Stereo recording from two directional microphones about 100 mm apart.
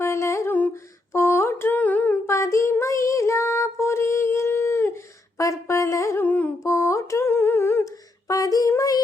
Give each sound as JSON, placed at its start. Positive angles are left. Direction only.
{"t": 0.0, "sound": "humming", "side_deg": 30}
{"t": 1.1, "sound": "mantra", "side_deg": 25}
{"t": 2.2, "sound": "child singing", "side_deg": 30}
{"t": 6.2, "sound": "humming", "side_deg": 15}
{"t": 6.6, "sound": "a sound", "side_deg": 30}
{"t": 8.3, "sound": "female singing", "side_deg": 35}